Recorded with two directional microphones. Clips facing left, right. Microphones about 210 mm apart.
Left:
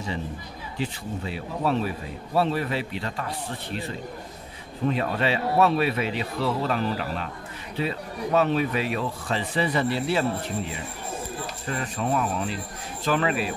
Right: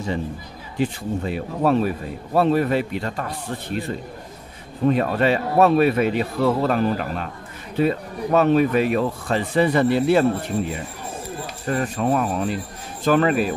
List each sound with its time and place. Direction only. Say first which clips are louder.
0.7 s a man's voice: right 8 dB; 50° right (ahead or behind)
4.8 s a man's voice: right 6 dB; 50° right (ahead or behind)
11.6 s a man's voice: right 7 dB; 50° right (ahead or behind)